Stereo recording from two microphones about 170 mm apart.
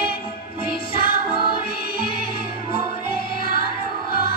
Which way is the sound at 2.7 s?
65° left (ahead or behind).